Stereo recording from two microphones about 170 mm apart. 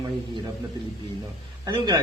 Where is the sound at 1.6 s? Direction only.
25° right (ahead or behind).